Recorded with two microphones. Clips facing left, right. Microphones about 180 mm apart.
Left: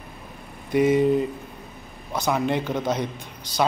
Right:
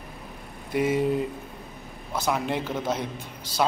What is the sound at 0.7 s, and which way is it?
Speech, 5° right (ahead or behind).